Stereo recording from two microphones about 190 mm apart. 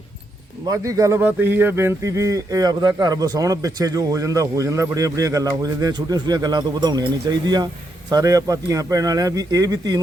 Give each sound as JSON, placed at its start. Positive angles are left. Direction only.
{"t": 0.7, "sound": "speech", "side_deg": -15}